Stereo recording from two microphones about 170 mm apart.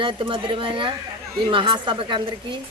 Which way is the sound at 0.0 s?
30° right (ahead or behind).